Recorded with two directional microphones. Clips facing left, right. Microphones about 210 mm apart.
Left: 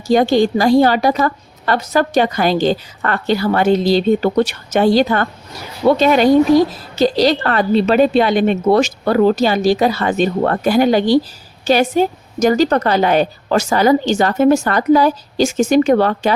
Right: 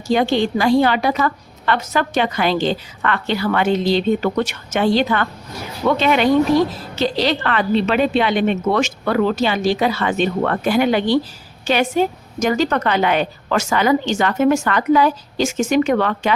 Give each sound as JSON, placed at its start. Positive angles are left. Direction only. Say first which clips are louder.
{"t": 0.1, "sound": "a woman's voice", "louder": "left 4 dB", "side_deg": 40}